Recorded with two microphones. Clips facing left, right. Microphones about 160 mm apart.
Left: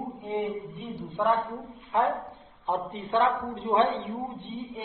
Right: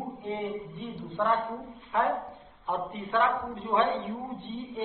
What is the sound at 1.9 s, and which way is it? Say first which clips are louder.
Speech: left 2 dB; 20° left (ahead or behind).